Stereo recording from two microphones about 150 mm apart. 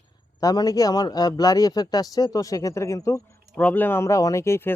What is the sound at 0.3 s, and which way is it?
A man's voice, 25° left (ahead or behind).